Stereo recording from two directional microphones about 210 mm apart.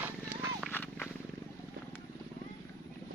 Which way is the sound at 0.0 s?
10° right (ahead or behind).